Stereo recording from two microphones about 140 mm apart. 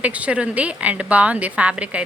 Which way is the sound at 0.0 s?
10° right (ahead or behind).